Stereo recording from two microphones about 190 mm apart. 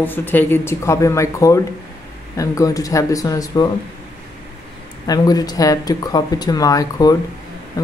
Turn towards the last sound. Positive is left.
turn(degrees=20)  # may be behind; listen again after turning